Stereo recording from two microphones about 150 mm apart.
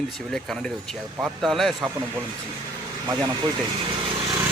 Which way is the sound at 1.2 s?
Centre (ahead or behind).